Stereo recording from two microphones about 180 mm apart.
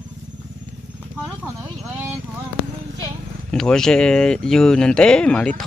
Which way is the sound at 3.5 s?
5° left (ahead or behind).